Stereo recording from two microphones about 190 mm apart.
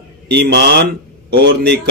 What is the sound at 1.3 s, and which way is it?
Speech, 50° right (ahead or behind).